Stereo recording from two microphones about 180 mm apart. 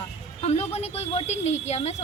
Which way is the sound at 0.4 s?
35° left (ahead or behind).